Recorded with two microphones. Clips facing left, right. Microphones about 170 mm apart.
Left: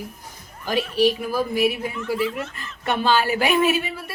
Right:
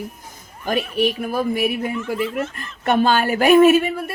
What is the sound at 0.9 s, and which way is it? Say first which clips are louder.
Speech: left 3 dB; 55° right (ahead or behind).